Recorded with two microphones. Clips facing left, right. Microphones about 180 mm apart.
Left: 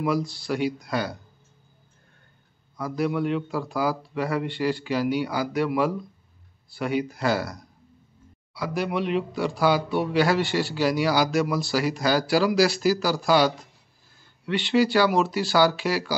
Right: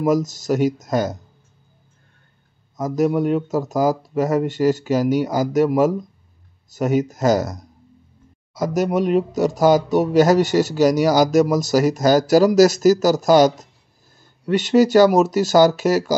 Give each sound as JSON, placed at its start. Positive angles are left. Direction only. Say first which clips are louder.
{"t": 0.0, "sound": "speech", "louder": "right 7 dB", "side_deg": -45}
{"t": 2.8, "sound": "speech", "louder": "right 7 dB", "side_deg": -45}